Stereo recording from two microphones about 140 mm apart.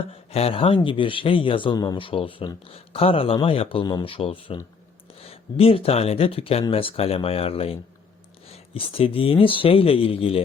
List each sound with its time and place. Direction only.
0.1 s a man's voice: 45° left (ahead or behind)